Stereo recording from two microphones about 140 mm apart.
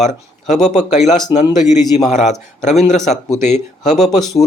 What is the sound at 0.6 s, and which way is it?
A man's voice, 55° left (ahead or behind).